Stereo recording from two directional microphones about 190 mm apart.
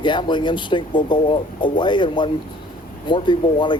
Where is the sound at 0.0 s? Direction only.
25° left (ahead or behind).